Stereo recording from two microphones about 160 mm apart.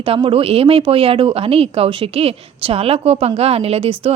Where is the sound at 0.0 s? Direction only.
35° right (ahead or behind).